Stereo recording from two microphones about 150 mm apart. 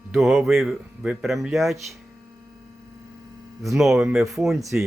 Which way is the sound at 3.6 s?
Centre (ahead or behind).